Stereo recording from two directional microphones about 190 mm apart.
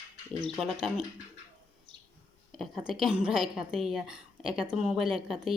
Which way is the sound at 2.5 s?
Centre (ahead or behind).